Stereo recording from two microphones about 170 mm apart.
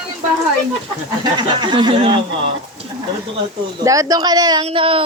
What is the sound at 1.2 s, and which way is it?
Speech, 25° right (ahead or behind).